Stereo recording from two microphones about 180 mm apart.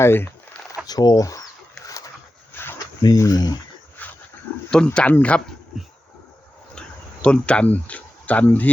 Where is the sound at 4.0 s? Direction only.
10° left (ahead or behind).